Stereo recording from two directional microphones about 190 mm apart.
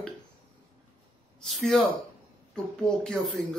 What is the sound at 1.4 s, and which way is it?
Speech, centre (ahead or behind).